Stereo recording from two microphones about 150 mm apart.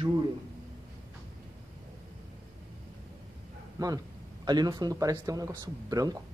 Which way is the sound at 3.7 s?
25° right (ahead or behind).